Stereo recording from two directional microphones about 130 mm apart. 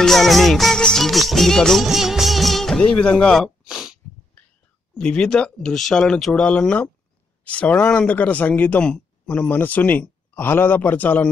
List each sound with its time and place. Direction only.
0.0 s music: centre (ahead or behind)
4.9 s speech: 5° left (ahead or behind)